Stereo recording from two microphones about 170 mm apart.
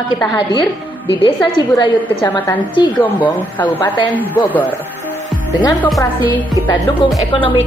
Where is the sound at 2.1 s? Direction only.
10° left (ahead or behind).